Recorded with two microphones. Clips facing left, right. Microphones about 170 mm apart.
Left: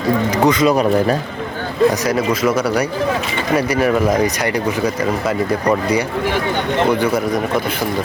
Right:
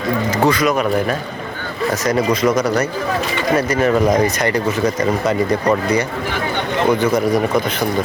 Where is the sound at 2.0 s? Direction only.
5° left (ahead or behind).